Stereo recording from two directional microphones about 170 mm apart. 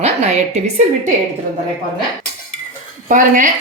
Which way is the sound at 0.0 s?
40° right (ahead or behind).